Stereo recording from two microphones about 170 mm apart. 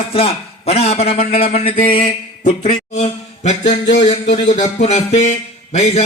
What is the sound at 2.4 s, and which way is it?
Speech, 45° left (ahead or behind).